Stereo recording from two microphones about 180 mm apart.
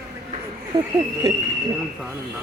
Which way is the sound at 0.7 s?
20° right (ahead or behind).